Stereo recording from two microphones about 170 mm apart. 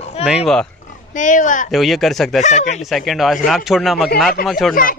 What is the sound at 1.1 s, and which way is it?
Speech, 50° left (ahead or behind).